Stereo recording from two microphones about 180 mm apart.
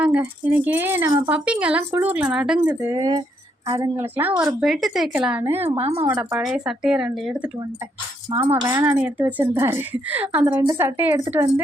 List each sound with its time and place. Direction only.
0.0 s speech: 10° right (ahead or behind)
5.7 s speech: 30° right (ahead or behind)
6.0 s speech: 15° right (ahead or behind)
6.4 s speech: 5° right (ahead or behind)
8.4 s speech: 20° right (ahead or behind)
9.0 s speech: 5° right (ahead or behind)